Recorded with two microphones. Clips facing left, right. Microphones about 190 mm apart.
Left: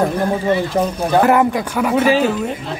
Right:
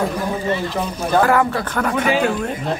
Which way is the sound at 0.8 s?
40° left (ahead or behind).